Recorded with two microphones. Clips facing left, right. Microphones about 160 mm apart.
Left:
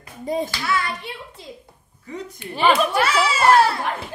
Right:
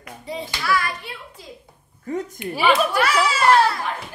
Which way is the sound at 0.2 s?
45° left (ahead or behind).